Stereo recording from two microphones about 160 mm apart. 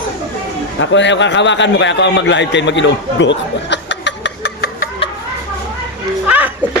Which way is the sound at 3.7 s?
90° left.